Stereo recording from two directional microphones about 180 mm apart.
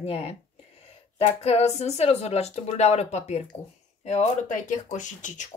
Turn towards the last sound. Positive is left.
turn(degrees=45)  # may be behind; listen again after turning